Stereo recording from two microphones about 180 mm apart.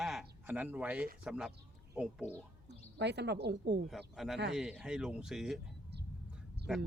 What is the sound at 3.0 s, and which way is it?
Speech, 70° right (ahead or behind).